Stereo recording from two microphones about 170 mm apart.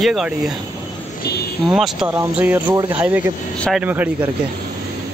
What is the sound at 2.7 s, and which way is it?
Speech, 25° right (ahead or behind).